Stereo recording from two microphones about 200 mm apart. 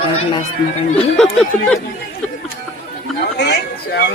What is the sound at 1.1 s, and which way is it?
Speech, 5° left (ahead or behind).